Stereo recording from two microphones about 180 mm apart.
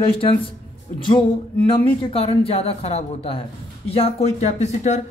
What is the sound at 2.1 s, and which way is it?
Speech, 30° left (ahead or behind).